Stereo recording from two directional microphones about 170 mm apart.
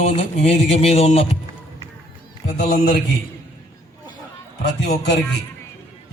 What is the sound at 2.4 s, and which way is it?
Speech, 45° left (ahead or behind).